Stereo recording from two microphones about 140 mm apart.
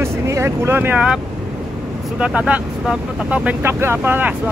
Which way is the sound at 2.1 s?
10° right (ahead or behind).